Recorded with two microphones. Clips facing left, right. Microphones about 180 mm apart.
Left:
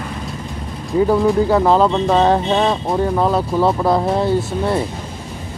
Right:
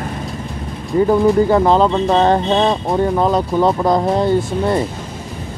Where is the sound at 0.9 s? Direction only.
Centre (ahead or behind).